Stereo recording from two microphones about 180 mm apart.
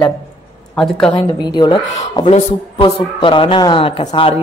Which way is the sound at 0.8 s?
Centre (ahead or behind).